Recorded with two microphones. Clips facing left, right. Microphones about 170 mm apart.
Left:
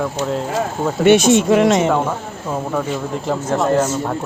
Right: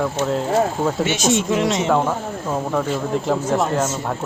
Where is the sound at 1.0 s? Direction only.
60° left (ahead or behind).